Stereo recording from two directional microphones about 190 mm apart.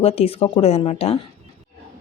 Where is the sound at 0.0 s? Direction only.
30° left (ahead or behind).